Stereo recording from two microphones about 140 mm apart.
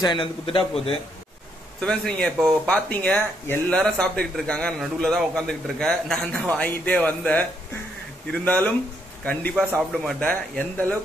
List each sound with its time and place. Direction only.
0.0 s a man's voice: 35° left (ahead or behind)
1.8 s a man's voice: 5° left (ahead or behind)